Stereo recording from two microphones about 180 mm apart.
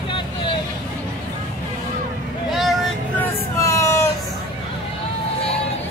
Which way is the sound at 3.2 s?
15° left (ahead or behind).